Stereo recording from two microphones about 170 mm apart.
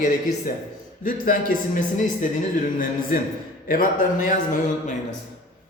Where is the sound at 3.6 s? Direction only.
55° left (ahead or behind).